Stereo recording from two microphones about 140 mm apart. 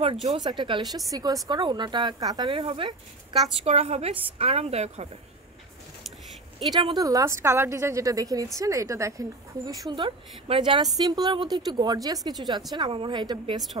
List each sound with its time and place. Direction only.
0.0 s a woman's voice: 45° right (ahead or behind)
0.4 s speech: 30° right (ahead or behind)
3.6 s a woman's voice: 50° right (ahead or behind)
6.7 s a woman's voice: 30° right (ahead or behind)